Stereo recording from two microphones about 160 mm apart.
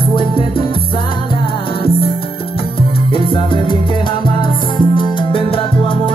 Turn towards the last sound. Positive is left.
turn(degrees=35)  # may be behind; listen again after turning